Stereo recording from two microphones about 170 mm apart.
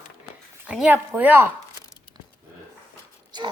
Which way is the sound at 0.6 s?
5° right (ahead or behind).